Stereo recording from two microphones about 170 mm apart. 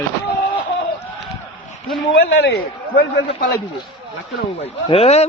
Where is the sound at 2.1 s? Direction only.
80° left; by 3.5 s 60° left (ahead or behind).